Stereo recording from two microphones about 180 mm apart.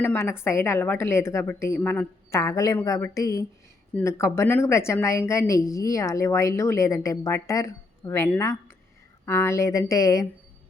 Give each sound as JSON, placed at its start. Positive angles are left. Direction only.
{"t": 0.0, "sound": "a woman's voice", "side_deg": 15}